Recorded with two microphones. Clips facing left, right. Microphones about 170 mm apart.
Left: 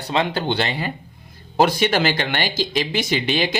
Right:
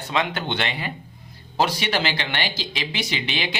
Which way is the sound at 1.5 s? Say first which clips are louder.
Left 5 dB; 50° left (ahead or behind).